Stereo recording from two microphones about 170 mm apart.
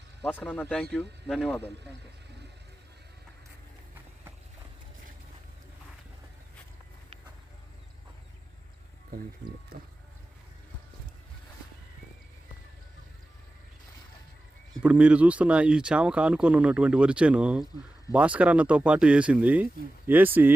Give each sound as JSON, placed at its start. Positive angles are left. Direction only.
{"t": 0.2, "sound": "speech", "side_deg": 10}
{"t": 14.7, "sound": "speech", "side_deg": -5}